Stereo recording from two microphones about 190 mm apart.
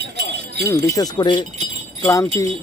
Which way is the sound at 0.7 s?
15° left (ahead or behind).